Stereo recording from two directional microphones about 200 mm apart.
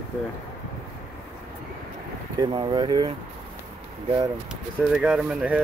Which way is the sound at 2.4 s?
25° right (ahead or behind).